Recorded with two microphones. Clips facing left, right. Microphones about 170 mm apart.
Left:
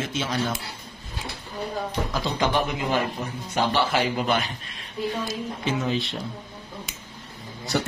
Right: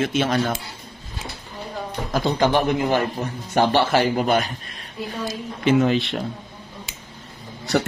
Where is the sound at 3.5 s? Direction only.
45° right (ahead or behind).